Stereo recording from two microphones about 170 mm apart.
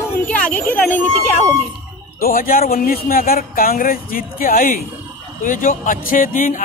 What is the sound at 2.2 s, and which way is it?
A man's voice, 55° left (ahead or behind).